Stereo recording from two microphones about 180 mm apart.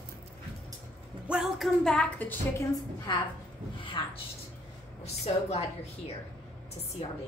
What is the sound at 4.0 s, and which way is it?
Speech, 25° left (ahead or behind).